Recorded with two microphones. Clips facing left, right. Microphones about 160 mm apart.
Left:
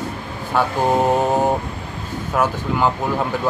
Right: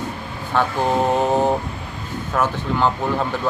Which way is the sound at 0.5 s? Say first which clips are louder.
Left 1 dB; 10° left (ahead or behind).